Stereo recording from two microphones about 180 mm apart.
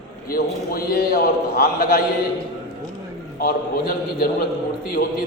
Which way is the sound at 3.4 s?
55° left (ahead or behind).